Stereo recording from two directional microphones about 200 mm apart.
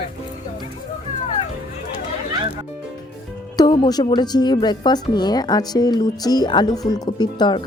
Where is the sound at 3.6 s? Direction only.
20° left (ahead or behind).